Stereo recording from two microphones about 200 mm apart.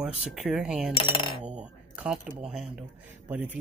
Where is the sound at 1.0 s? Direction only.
25° left (ahead or behind).